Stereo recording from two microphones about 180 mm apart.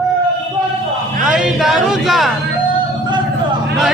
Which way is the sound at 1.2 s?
5° right (ahead or behind).